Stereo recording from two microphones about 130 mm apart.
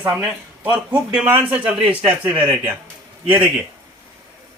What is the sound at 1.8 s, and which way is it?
Speech, 45° right (ahead or behind).